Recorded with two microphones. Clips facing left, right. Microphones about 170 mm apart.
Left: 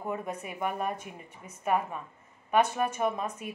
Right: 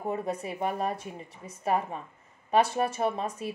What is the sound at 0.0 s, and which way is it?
A woman's voice, 35° right (ahead or behind).